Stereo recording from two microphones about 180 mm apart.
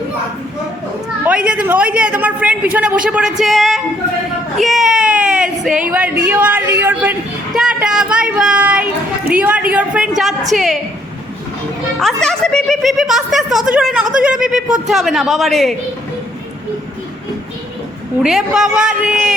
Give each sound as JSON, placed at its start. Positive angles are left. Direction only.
{"t": 1.2, "sound": "a woman's voice", "side_deg": -5}
{"t": 11.9, "sound": "speech", "side_deg": 0}
{"t": 18.2, "sound": "speech", "side_deg": -5}